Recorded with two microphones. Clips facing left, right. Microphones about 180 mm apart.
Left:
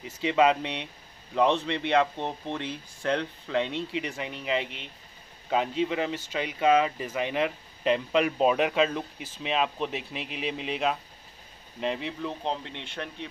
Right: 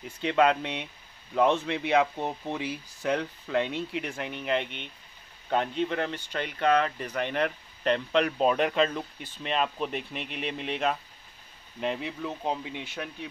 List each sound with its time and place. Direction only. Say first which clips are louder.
0.0 s speech: left 1 dB; centre (ahead or behind)